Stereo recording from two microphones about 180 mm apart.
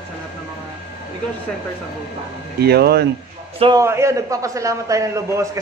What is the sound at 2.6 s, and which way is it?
Speech, 65° right (ahead or behind).